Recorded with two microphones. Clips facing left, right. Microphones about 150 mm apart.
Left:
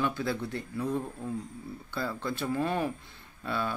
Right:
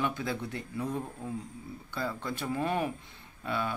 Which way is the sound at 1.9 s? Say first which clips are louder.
Left 1 dB; 15° right (ahead or behind).